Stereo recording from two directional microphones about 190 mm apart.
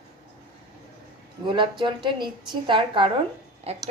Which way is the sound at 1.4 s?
25° right (ahead or behind).